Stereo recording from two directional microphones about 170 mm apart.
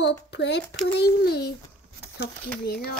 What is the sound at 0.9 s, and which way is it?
Speech, 70° left (ahead or behind).